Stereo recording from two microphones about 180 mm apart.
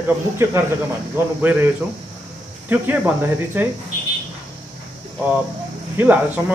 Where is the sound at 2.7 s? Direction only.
10° right (ahead or behind).